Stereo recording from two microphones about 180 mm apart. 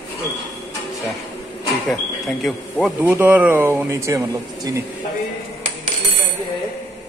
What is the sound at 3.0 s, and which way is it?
Speech, 10° right (ahead or behind).